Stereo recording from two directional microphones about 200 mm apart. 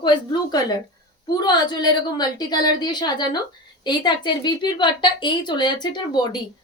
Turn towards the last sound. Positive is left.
turn(degrees=20)  # may be behind; listen again after turning